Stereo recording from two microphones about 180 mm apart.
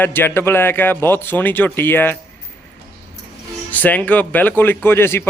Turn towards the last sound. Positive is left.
turn(degrees=15)  # may be behind; listen again after turning